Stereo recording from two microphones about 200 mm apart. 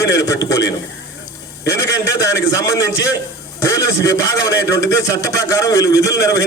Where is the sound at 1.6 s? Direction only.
15° left (ahead or behind).